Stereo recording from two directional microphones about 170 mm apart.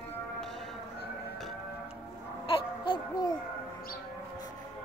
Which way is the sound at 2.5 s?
30° left (ahead or behind).